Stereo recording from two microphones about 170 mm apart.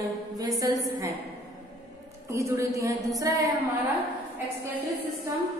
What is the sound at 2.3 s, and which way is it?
A woman's voice, 15° right (ahead or behind).